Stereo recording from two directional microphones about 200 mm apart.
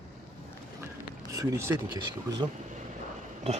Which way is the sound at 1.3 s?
15° right (ahead or behind).